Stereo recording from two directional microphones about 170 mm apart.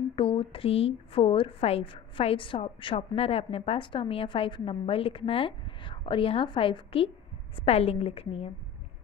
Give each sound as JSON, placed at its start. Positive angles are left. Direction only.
{"t": 0.1, "sound": "a woman's voice", "side_deg": 30}